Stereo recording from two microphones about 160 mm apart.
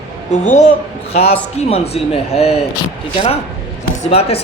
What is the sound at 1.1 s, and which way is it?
A woman's voice, 40° left (ahead or behind).